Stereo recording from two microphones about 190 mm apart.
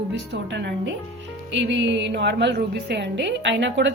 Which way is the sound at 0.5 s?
70° right (ahead or behind).